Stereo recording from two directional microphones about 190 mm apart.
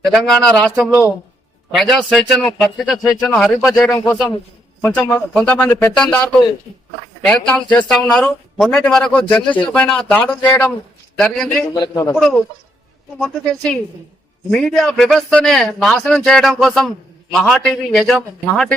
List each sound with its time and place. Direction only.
0.0 s speech: centre (ahead or behind)
4.8 s a man's voice: 10° left (ahead or behind)
11.7 s a man's voice: 20° left (ahead or behind)
13.1 s speech: 5° left (ahead or behind)